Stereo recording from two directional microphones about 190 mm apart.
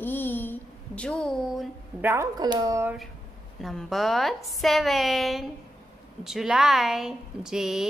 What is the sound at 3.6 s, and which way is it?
A woman's voice, centre (ahead or behind).